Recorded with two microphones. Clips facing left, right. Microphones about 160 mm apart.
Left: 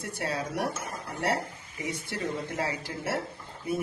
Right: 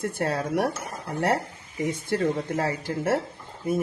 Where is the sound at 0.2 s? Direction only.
50° right (ahead or behind).